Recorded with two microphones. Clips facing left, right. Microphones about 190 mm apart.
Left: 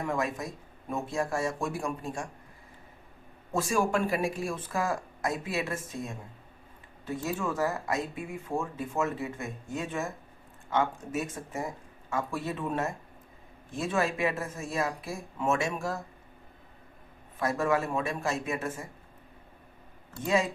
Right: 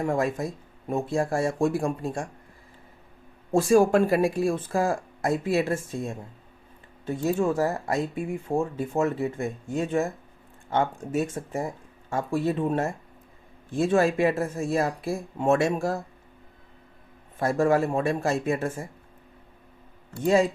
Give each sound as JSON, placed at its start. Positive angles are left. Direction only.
{"t": 0.0, "sound": "speech", "side_deg": -45}
{"t": 0.9, "sound": "speech", "side_deg": -30}
{"t": 3.5, "sound": "speech", "side_deg": -35}
{"t": 13.9, "sound": "speech", "side_deg": -35}
{"t": 17.4, "sound": "speech", "side_deg": -35}